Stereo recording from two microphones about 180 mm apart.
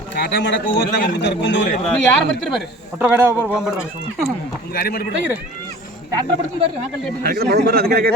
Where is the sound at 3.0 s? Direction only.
10° right (ahead or behind).